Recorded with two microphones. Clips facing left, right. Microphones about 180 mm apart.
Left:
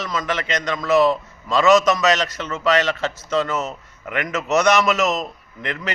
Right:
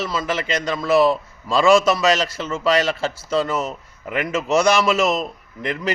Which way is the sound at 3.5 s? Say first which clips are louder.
Right 1 dB; 10° right (ahead or behind).